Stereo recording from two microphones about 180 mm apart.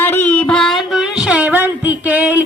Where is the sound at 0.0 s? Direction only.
10° left (ahead or behind).